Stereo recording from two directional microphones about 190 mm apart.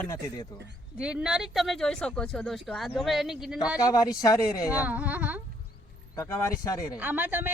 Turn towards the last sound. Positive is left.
turn(degrees=-10)  # may be behind; listen again after turning